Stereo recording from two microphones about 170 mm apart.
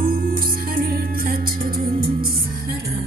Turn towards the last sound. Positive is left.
turn(degrees=-60)  # may be behind; listen again after turning